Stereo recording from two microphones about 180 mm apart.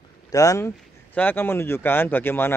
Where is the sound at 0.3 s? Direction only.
20° left (ahead or behind).